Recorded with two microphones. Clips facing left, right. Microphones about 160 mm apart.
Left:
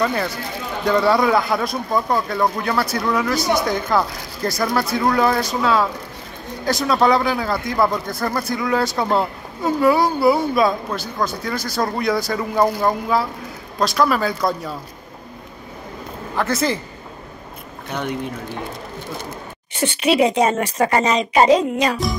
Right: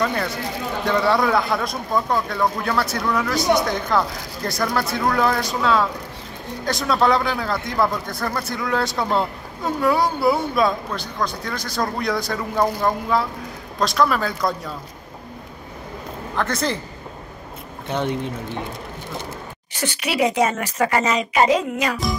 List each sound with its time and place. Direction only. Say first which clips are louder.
0.0 s speech: left 2 dB; 5° left (ahead or behind)
16.3 s speech: left 3 dB; 5° left (ahead or behind)
17.8 s speech: right 2 dB; 25° right (ahead or behind)
19.7 s speech: left 7 dB; 25° left (ahead or behind)